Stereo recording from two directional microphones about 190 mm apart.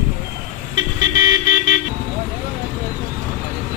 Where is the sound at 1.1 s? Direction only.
45° left (ahead or behind).